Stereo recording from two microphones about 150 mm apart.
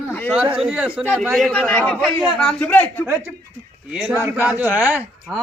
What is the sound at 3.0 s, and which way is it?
Speech, 15° right (ahead or behind).